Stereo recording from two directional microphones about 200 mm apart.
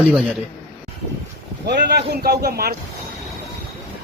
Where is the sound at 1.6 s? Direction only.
55° right (ahead or behind).